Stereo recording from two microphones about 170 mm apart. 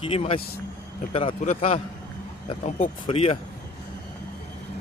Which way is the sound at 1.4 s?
40° left (ahead or behind).